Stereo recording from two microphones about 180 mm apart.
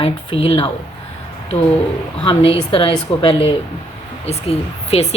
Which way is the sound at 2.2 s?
30° left (ahead or behind).